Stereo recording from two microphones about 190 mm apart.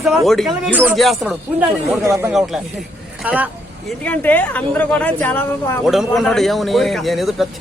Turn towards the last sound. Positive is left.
turn(degrees=0)  # may be behind; listen again after turning